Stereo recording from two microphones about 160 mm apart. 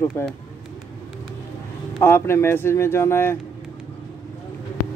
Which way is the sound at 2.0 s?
15° left (ahead or behind).